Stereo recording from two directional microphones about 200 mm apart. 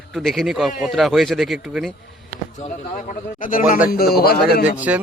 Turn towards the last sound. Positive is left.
turn(degrees=-10)  # may be behind; listen again after turning